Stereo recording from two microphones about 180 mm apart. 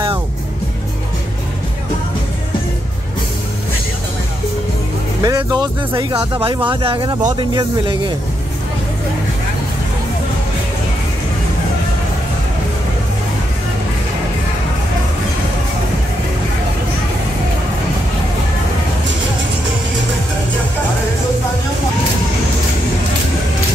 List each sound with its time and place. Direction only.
5.2 s speech: 20° right (ahead or behind)